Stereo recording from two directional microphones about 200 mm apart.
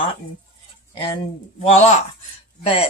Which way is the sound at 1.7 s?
35° left (ahead or behind).